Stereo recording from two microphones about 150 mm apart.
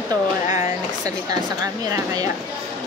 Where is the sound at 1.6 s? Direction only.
25° right (ahead or behind).